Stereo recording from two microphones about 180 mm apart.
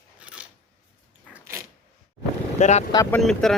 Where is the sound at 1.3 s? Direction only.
15° right (ahead or behind).